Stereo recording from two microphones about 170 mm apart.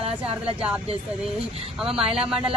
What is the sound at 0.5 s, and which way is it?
Speech, 5° right (ahead or behind).